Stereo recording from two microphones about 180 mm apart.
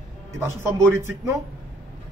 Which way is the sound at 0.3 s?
15° right (ahead or behind).